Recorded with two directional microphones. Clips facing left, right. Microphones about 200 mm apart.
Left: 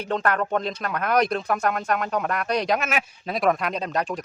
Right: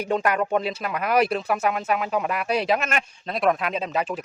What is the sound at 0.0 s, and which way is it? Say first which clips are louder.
Speech: right 1 dB; 10° right (ahead or behind).